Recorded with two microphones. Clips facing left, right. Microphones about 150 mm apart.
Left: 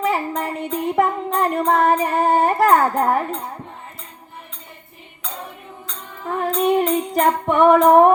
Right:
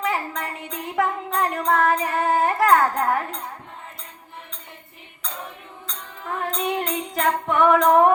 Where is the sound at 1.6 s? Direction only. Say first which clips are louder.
Left 3 dB; 40° left (ahead or behind).